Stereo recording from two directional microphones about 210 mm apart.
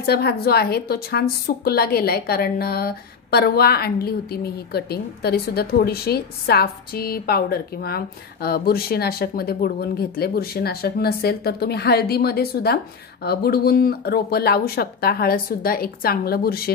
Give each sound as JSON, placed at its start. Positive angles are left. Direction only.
{"t": 0.0, "sound": "a woman's voice", "side_deg": 50}